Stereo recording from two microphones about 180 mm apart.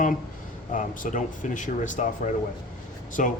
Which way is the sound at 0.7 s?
45° left (ahead or behind).